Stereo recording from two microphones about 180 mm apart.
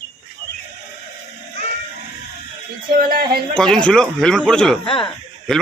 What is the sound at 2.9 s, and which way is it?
Speech, 55° right (ahead or behind).